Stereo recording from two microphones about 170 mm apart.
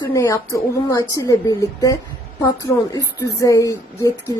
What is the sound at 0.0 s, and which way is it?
A woman's voice, 15° left (ahead or behind).